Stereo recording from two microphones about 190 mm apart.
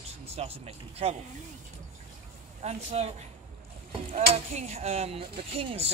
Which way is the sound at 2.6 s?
35° right (ahead or behind).